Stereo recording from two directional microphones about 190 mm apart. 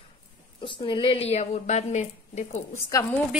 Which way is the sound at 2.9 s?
15° left (ahead or behind).